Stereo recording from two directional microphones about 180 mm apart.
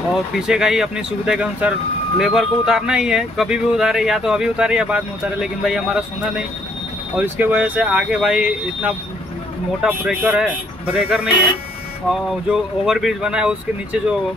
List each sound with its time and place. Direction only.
0.1 s speech: 5° right (ahead or behind)